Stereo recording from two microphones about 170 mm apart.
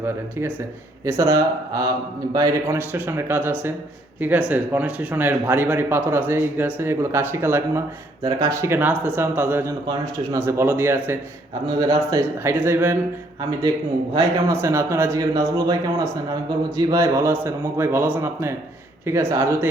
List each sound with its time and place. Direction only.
1.0 s speech: 15° right (ahead or behind)
14.6 s speech: 15° right (ahead or behind)